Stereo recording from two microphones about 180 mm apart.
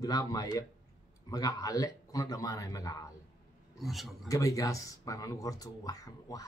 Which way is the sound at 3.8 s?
Centre (ahead or behind).